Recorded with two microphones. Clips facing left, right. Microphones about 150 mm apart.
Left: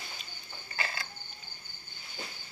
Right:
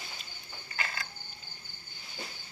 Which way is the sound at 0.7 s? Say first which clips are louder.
Left 1 dB; 30° left (ahead or behind).